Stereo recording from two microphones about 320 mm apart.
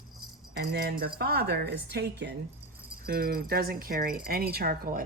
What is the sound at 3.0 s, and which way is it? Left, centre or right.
Speech, right.